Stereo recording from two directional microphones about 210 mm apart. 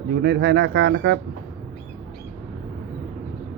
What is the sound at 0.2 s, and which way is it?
Speech, 55° right (ahead or behind).